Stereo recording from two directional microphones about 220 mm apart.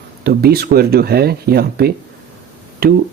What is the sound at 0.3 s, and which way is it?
Speech, 45° right (ahead or behind).